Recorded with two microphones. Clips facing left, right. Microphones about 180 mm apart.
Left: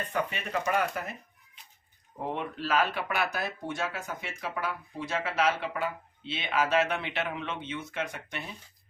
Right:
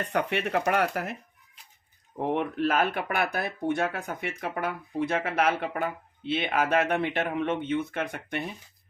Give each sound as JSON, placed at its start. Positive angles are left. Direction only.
{"t": 0.1, "sound": "speech", "side_deg": -75}
{"t": 2.2, "sound": "speech", "side_deg": -60}